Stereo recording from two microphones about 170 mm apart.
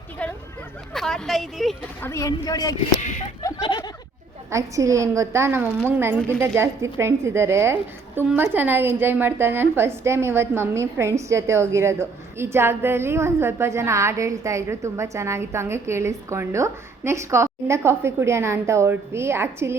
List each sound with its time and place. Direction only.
0.2 s a sound: 5° left (ahead or behind)
0.9 s a woman's voice: centre (ahead or behind)
2.0 s speech: 15° left (ahead or behind)
3.0 s speech: 45° left (ahead or behind)
3.6 s speech: 25° left (ahead or behind)
4.5 s a woman's voice: 20° right (ahead or behind)